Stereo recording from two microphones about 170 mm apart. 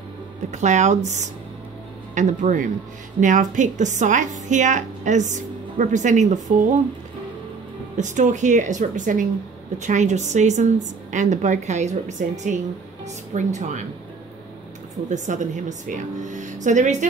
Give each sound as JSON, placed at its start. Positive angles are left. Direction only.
{"t": 0.5, "sound": "a woman's voice", "side_deg": -45}
{"t": 8.0, "sound": "a woman's voice", "side_deg": -45}
{"t": 15.0, "sound": "a woman's voice", "side_deg": -45}